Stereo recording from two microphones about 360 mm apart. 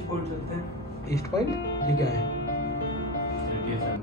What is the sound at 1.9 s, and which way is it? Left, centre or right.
Speech, left.